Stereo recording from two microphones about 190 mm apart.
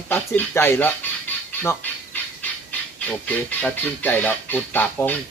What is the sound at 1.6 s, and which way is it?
Squawk, 10° left (ahead or behind).